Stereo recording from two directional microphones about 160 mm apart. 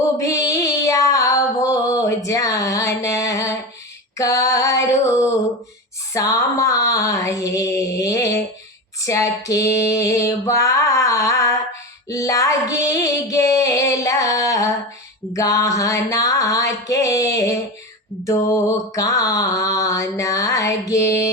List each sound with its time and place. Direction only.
0.2 s child singing: 20° left (ahead or behind)
1.7 s a sound: 20° left (ahead or behind)
4.2 s female singing: 20° left (ahead or behind)
6.1 s mantra: 20° left (ahead or behind)
10.6 s music: 20° left (ahead or behind)
15.3 s a sound: 20° left (ahead or behind)
18.9 s mantra: 20° left (ahead or behind)